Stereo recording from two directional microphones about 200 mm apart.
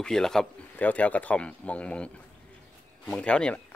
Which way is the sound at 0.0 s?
Centre (ahead or behind).